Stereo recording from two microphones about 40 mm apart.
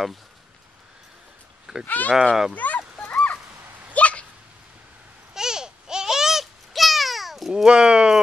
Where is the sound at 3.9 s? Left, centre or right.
Left.